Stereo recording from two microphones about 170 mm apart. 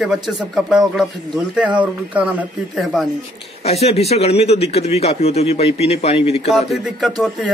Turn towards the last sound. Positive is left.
turn(degrees=0)  # may be behind; listen again after turning